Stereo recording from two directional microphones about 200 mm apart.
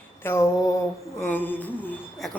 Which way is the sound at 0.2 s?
10° left (ahead or behind).